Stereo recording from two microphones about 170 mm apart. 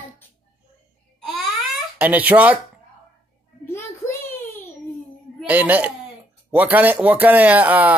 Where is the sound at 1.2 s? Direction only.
Centre (ahead or behind).